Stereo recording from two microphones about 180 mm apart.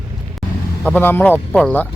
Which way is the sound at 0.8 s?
10° left (ahead or behind).